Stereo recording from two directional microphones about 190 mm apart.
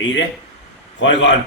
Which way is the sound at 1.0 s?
75° left (ahead or behind).